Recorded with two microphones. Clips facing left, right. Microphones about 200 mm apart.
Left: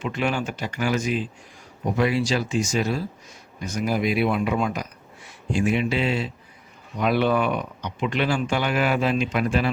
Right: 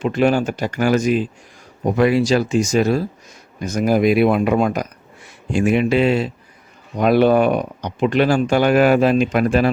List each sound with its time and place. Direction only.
0.0 s speech: 40° right (ahead or behind)